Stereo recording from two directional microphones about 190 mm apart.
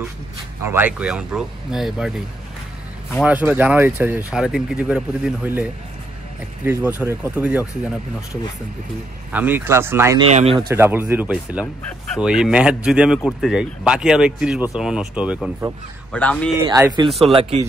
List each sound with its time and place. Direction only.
0.7 s speech: 10° right (ahead or behind)
3.3 s speech: 10° right (ahead or behind)
9.3 s speech: 10° right (ahead or behind)
16.1 s speech: 5° left (ahead or behind)
16.6 s speech: 20° right (ahead or behind)
17.2 s speech: 30° right (ahead or behind)